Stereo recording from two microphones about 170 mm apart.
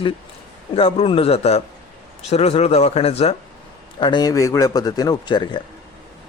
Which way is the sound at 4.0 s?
25° left (ahead or behind).